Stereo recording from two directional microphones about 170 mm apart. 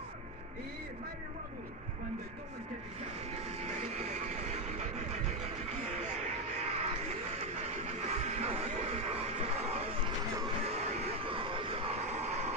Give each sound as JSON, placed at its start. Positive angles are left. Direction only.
{"t": 3.3, "sound": "vehicle", "side_deg": -40}